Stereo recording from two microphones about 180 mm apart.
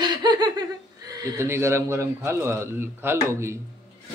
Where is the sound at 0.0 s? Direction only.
25° right (ahead or behind).